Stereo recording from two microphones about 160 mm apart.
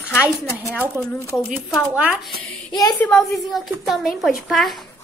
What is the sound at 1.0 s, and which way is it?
Speech, 15° right (ahead or behind).